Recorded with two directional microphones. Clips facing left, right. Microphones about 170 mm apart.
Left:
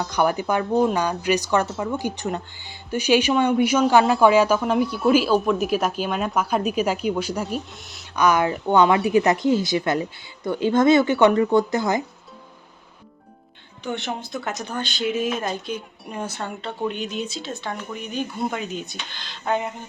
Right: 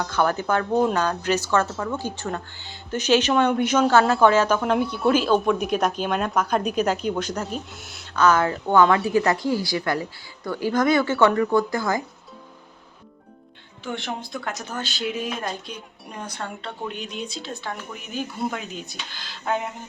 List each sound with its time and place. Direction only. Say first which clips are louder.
0.0 s speech: left 1 dB; 15° left (ahead or behind)
0.7 s speech: left 2 dB; centre (ahead or behind)
0.9 s speech: left 1 dB; 10° left (ahead or behind)
8.1 s speech: even; 15° left (ahead or behind)
13.8 s speech: left 2 dB; centre (ahead or behind)